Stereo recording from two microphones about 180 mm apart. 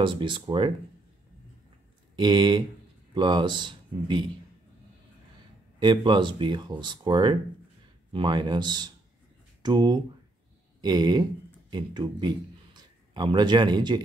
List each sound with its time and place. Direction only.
0.0 s speech: 30° right (ahead or behind)
2.1 s speech: 25° right (ahead or behind)
5.8 s a man's voice: 25° right (ahead or behind)